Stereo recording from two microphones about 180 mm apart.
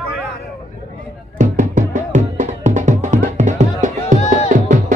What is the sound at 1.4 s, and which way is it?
Music, 45° right (ahead or behind).